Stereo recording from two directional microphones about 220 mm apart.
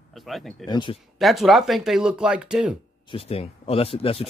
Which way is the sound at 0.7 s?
20° left (ahead or behind).